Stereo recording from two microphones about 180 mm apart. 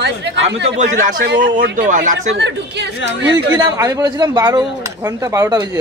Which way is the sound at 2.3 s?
75° right (ahead or behind).